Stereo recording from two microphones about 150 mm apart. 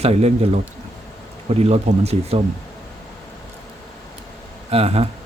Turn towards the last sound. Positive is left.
turn(degrees=-40)  # may be behind; listen again after turning